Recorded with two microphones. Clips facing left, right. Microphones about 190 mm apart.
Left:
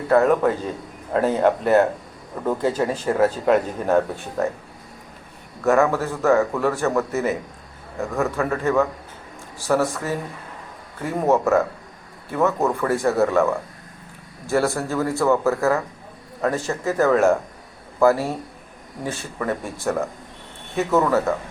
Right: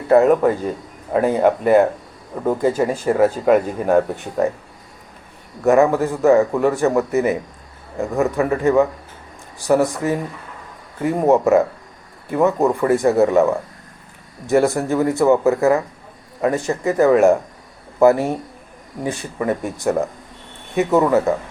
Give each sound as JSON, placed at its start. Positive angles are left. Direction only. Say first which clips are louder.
{"t": 1.1, "sound": "speech", "louder": "right 3 dB", "side_deg": -10}
{"t": 5.6, "sound": "speech", "louder": "right 4 dB", "side_deg": -15}